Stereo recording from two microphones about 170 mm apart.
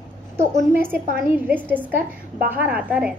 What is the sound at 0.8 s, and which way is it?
A woman's voice, 10° right (ahead or behind).